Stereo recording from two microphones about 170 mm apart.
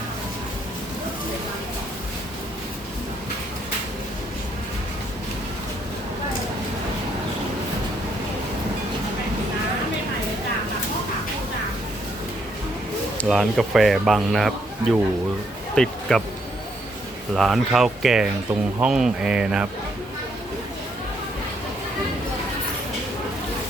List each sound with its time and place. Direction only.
13.2 s a man's voice: centre (ahead or behind)
17.3 s a man's voice: centre (ahead or behind)